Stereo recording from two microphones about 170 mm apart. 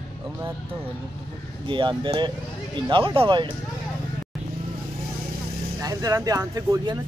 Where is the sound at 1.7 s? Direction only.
30° right (ahead or behind).